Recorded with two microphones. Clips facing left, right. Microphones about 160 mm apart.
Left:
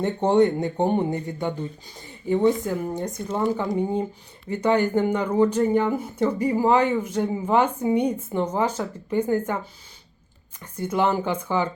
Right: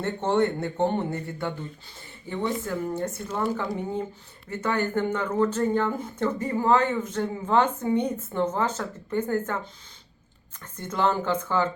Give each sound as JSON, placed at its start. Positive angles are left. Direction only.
{"t": 0.0, "sound": "speech", "side_deg": 15}
{"t": 10.6, "sound": "speech", "side_deg": 10}